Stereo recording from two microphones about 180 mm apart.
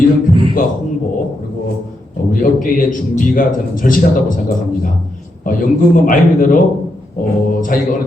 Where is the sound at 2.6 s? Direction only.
50° left (ahead or behind).